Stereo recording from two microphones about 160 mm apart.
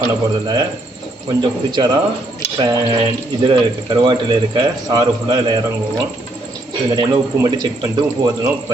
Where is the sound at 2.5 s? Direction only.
30° right (ahead or behind).